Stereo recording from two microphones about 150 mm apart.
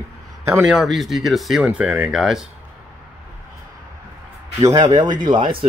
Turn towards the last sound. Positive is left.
turn(degrees=-35)  # may be behind; listen again after turning